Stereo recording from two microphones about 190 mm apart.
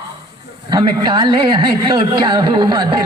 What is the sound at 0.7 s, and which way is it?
Speech, 25° right (ahead or behind).